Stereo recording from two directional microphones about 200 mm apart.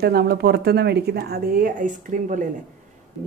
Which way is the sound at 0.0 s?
50° right (ahead or behind).